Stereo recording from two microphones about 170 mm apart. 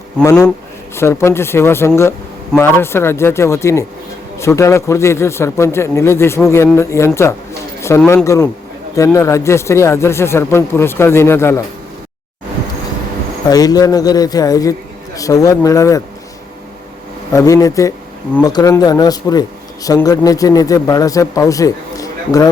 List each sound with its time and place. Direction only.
0.9 s a man's voice: 15° left (ahead or behind)
13.5 s a man's voice: 20° left (ahead or behind)
17.3 s a man's voice: 20° left (ahead or behind)